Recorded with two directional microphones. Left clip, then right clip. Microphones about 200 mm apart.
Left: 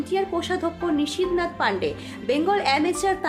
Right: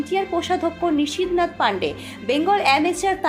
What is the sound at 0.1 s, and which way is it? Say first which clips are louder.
Speech: right 3 dB; 5° right (ahead or behind).